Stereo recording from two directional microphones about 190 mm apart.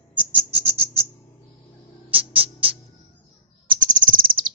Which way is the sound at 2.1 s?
30° right (ahead or behind).